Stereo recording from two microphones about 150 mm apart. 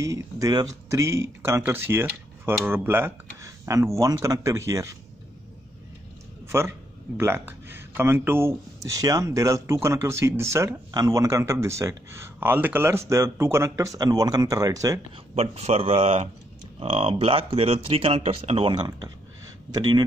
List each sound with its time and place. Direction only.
0.0 s speech: 20° right (ahead or behind)
6.5 s a man's voice: 15° right (ahead or behind)
15.3 s speech: 45° right (ahead or behind); by 19.1 s 25° right (ahead or behind)